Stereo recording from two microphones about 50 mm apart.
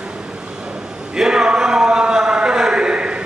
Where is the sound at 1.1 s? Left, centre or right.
Centre.